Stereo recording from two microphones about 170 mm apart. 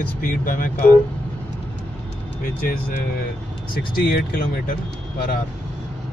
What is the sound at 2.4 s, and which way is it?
Speech, 60° left (ahead or behind).